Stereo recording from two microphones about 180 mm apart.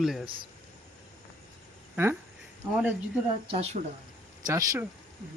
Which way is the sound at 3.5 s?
35° right (ahead or behind).